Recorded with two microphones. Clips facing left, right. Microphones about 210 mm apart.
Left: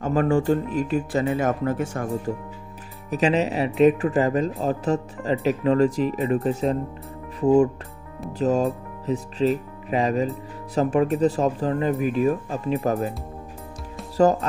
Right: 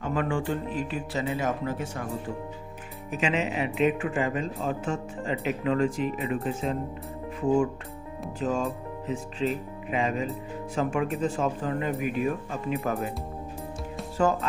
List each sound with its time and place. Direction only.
0.0 s speech: 40° left (ahead or behind)
3.1 s speech: 40° left (ahead or behind)
8.3 s speech: 40° left (ahead or behind)
14.2 s speech: 35° left (ahead or behind)